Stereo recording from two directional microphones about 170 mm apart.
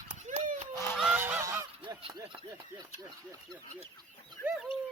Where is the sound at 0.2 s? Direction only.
45° right (ahead or behind).